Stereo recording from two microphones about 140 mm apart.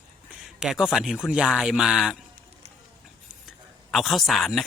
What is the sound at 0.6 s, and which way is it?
Speech, 5° right (ahead or behind).